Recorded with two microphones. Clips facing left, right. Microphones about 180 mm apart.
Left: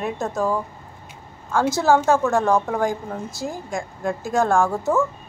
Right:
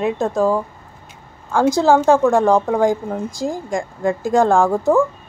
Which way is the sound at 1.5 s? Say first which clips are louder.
Right 4 dB; 15° right (ahead or behind).